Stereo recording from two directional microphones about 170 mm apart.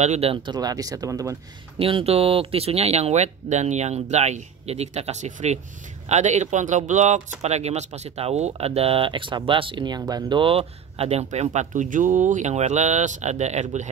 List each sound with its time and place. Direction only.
0.0 s speech: 40° right (ahead or behind); by 1.3 s 20° right (ahead or behind)
1.8 s speech: 35° right (ahead or behind)